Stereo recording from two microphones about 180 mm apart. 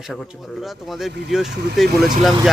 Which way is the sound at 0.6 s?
Centre (ahead or behind).